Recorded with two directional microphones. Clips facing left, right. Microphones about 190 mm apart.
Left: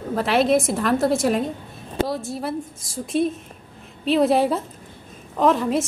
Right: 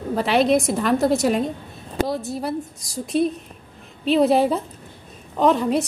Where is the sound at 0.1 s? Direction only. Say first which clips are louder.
Right 1 dB; centre (ahead or behind).